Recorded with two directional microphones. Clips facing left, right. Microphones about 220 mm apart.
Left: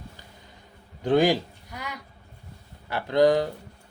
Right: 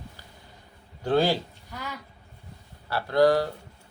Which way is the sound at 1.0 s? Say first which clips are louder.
Left 3 dB; 15° left (ahead or behind).